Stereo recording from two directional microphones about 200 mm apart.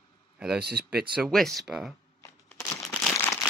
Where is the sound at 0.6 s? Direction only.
55° right (ahead or behind).